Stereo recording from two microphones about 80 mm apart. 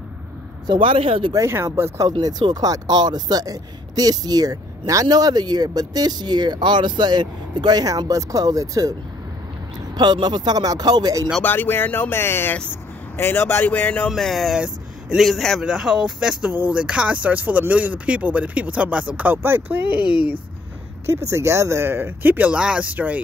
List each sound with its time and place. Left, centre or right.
0.7 s speech: right
1.5 s speech: right
2.5 s speech: right
9.9 s speech: right
11.4 s speech: left
14.0 s speech: centre
14.6 s a sound: centre
15.2 s speech: centre
15.6 s speech: centre; by 19.8 s right
21.0 s speech: right; by 23.2 s centre